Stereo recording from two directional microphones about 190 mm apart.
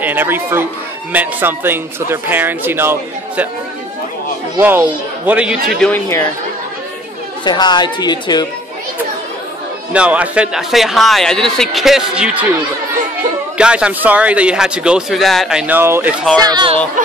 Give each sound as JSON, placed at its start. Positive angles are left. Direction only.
{"t": 0.0, "sound": "speech", "side_deg": -10}
{"t": 4.6, "sound": "speech", "side_deg": -10}
{"t": 5.8, "sound": "speech", "side_deg": 10}
{"t": 7.4, "sound": "speech", "side_deg": 20}
{"t": 9.9, "sound": "speech", "side_deg": -5}
{"t": 13.6, "sound": "speech", "side_deg": -5}
{"t": 16.3, "sound": "speech", "side_deg": -20}